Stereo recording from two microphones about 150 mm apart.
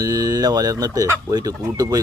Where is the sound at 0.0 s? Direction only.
25° right (ahead or behind).